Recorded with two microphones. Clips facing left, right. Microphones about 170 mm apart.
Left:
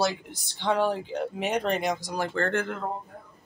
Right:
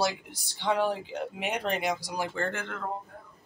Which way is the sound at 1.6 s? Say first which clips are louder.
Even; 10° right (ahead or behind).